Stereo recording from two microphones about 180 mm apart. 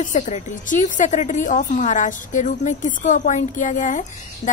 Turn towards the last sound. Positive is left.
turn(degrees=45)  # may be behind; listen again after turning